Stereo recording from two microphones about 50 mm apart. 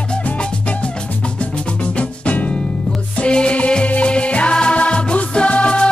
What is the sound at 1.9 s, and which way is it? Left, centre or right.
Music, left.